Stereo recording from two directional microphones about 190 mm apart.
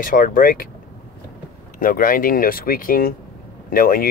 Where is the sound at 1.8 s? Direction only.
45° left (ahead or behind).